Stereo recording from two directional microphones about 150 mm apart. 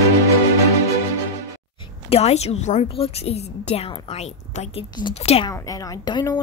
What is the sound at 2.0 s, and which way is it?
A woman's voice, 45° left (ahead or behind).